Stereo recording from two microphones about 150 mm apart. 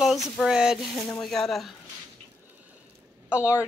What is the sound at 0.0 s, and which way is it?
Speech, centre (ahead or behind).